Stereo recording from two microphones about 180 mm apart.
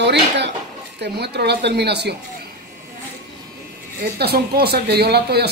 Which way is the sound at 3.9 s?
60° right (ahead or behind).